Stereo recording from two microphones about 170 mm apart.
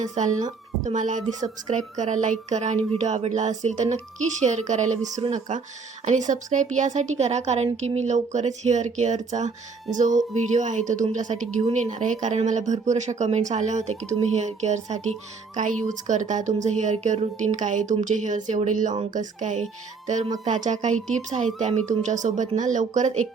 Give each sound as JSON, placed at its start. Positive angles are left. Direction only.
{"t": 0.0, "sound": "a woman's voice", "side_deg": -45}